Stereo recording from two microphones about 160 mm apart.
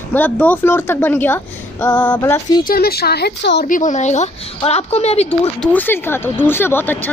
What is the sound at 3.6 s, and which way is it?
A woman's voice, 55° left (ahead or behind).